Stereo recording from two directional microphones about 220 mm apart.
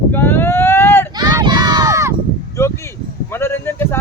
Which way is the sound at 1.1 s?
20° right (ahead or behind).